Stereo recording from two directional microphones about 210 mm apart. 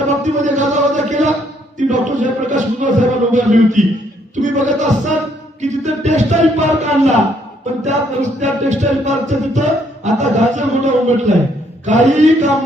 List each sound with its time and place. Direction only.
0.3 s a man's voice: 35° right (ahead or behind)
4.4 s music: 35° right (ahead or behind)